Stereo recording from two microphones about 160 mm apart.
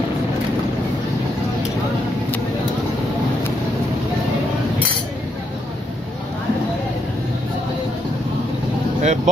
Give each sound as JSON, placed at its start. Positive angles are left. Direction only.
{"t": 9.0, "sound": "vehicle", "side_deg": -50}